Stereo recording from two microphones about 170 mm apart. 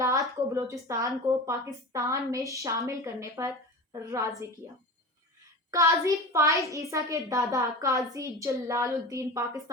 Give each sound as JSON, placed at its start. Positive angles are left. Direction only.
{"t": 0.0, "sound": "a woman's voice", "side_deg": -20}
{"t": 5.7, "sound": "a woman's voice", "side_deg": -20}